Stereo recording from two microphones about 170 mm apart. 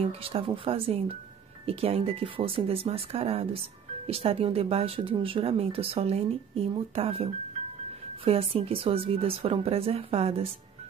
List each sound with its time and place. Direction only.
0.0 s speech: 35° right (ahead or behind)
8.3 s speech: 35° right (ahead or behind)